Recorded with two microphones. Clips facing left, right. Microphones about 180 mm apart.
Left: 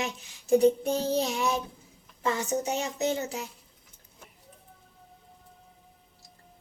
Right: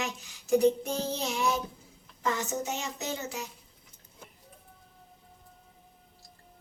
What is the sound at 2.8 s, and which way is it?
Speech, 35° left (ahead or behind).